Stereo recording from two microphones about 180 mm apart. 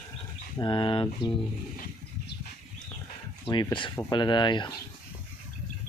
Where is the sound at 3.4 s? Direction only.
25° left (ahead or behind).